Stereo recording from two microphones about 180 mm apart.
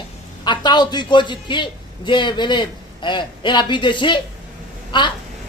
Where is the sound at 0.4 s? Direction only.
25° left (ahead or behind).